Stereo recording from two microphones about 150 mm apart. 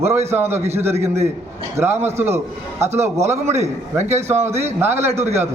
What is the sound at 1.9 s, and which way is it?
A man's voice, 15° right (ahead or behind).